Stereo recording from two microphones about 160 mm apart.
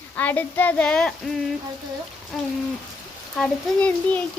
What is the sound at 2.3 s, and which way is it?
A child's voice, centre (ahead or behind).